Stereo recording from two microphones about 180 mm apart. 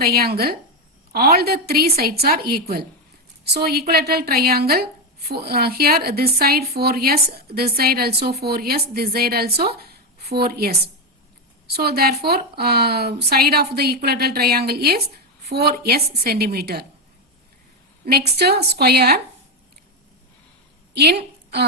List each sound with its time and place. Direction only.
0.0 s speech: 55° right (ahead or behind)
18.3 s speech: 65° right (ahead or behind)
20.9 s a sound: 65° right (ahead or behind)